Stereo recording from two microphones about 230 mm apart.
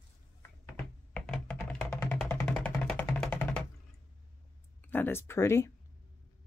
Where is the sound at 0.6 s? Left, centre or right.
Centre.